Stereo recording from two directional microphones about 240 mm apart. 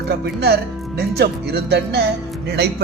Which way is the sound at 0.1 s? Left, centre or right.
Right.